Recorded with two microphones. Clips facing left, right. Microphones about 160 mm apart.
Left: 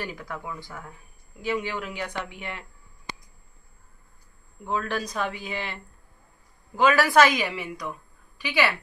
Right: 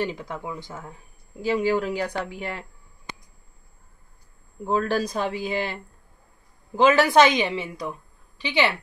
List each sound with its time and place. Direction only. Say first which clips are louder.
0.0 s a woman's voice: right 6 dB; 25° right (ahead or behind)
1.4 s speech: right 7 dB; 35° right (ahead or behind)
4.6 s speech: right 5 dB; 35° right (ahead or behind)
6.8 s a woman's voice: right 2 dB; 25° right (ahead or behind)